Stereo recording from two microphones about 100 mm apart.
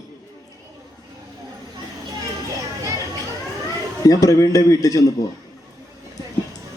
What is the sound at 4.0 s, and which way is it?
A man's voice, 35° left (ahead or behind).